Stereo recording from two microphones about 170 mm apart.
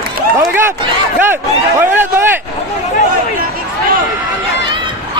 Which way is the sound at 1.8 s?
10° right (ahead or behind).